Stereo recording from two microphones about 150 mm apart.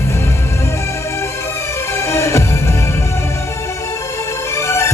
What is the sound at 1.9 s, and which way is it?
Music, 20° left (ahead or behind).